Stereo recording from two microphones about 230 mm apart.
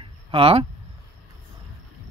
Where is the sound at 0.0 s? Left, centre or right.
Right.